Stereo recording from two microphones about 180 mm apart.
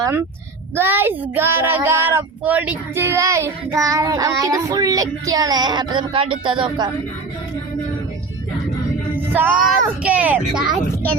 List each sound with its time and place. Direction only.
0.8 s speech: 10° right (ahead or behind)
9.1 s speech: 10° right (ahead or behind)